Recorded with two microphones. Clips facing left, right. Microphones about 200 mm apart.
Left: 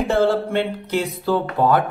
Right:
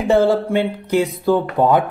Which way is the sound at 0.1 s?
15° right (ahead or behind).